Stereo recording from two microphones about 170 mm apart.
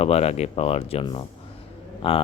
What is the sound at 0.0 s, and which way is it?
Speech, 40° left (ahead or behind).